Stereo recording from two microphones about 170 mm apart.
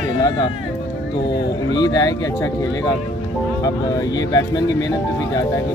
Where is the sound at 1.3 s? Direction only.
90° left.